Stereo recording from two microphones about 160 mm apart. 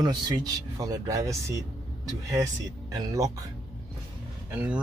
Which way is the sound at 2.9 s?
25° right (ahead or behind).